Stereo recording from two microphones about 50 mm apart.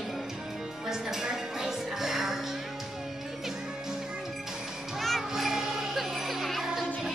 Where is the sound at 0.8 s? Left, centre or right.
Centre.